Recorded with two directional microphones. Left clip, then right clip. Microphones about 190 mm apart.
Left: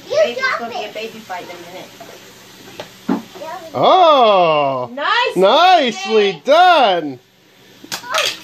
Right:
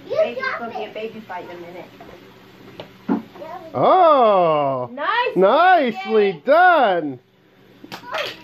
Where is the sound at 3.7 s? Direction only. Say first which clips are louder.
Left 3 dB; 10° left (ahead or behind).